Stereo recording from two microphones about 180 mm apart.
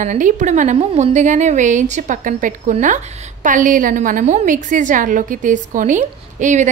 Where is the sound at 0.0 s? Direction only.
45° right (ahead or behind).